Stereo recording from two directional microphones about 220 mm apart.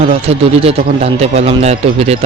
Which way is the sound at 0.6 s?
30° right (ahead or behind).